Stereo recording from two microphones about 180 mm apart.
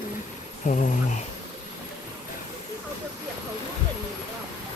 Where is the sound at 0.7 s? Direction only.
45° left (ahead or behind).